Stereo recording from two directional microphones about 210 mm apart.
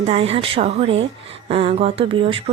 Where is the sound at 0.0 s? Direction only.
30° right (ahead or behind).